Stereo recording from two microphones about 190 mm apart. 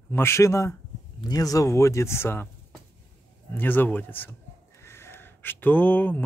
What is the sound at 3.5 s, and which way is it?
Speech, 10° left (ahead or behind).